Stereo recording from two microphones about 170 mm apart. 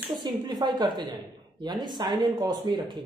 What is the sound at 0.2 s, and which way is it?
A woman's voice, 25° right (ahead or behind).